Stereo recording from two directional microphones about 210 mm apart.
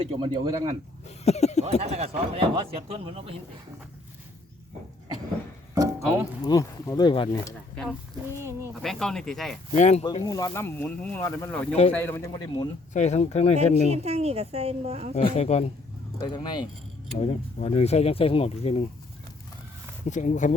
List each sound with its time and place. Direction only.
0.0 s speech: 25° right (ahead or behind)
1.0 s a sound: 30° left (ahead or behind)
1.8 s speech: 30° right (ahead or behind)
5.7 s a sound: 15° right (ahead or behind)
6.4 s speech: 15° left (ahead or behind)
8.4 s speech: 15° right (ahead or behind)
8.7 s speech: centre (ahead or behind)
9.7 s speech: 35° left (ahead or behind)
10.0 s speech: 20° left (ahead or behind)
12.9 s speech: 35° left (ahead or behind)
13.9 s a woman's voice: 30° right (ahead or behind)
15.1 s speech: 30° left (ahead or behind)
16.2 s speech: 20° left (ahead or behind)
20.1 s speech: 35° left (ahead or behind)